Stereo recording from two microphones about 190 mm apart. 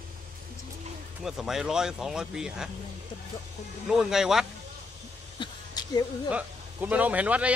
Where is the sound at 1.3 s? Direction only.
Centre (ahead or behind).